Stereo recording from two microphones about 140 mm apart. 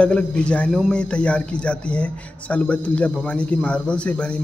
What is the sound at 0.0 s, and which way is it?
A man's voice, 10° left (ahead or behind).